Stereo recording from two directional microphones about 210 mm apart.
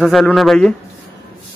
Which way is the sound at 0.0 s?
Centre (ahead or behind).